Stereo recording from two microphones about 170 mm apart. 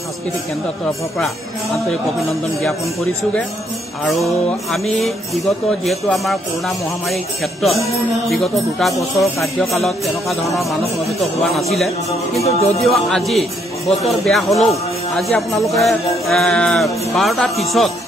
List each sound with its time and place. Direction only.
4.0 s speech: centre (ahead or behind)
8.3 s speech: centre (ahead or behind)
12.4 s music: 35° left (ahead or behind)
12.8 s speech: centre (ahead or behind)